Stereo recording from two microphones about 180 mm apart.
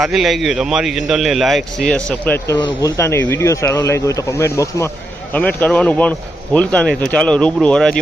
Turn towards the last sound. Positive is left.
turn(degrees=5)  # may be behind; listen again after turning